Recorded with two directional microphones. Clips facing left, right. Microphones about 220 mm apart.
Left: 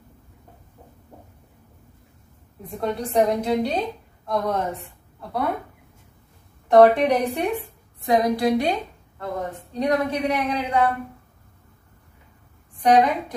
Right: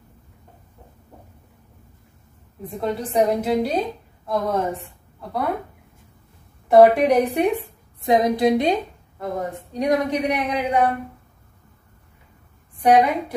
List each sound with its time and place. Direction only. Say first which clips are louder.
2.7 s a woman's voice: even; centre (ahead or behind)
7.0 s a woman's voice: right 3 dB; 15° right (ahead or behind)
12.8 s a woman's voice: right 1 dB; 10° right (ahead or behind)